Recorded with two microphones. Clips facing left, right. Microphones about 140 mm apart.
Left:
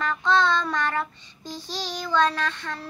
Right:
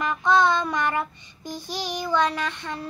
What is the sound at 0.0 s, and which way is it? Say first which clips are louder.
Child singing: right 2 dB; 15° right (ahead or behind).